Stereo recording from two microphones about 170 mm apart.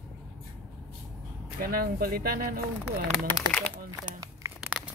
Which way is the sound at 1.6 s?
60° right (ahead or behind).